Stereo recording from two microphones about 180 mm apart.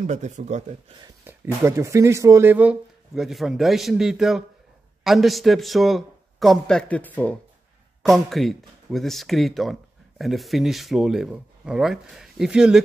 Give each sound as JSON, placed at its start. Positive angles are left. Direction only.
{"t": 0.0, "sound": "speech", "side_deg": -40}
{"t": 1.2, "sound": "speech", "side_deg": -15}